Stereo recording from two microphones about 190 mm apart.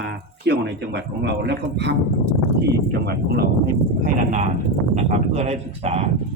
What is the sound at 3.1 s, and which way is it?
Speech, 55° right (ahead or behind).